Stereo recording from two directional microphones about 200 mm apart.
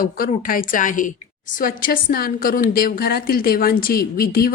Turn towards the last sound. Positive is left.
turn(degrees=45)  # may be behind; listen again after turning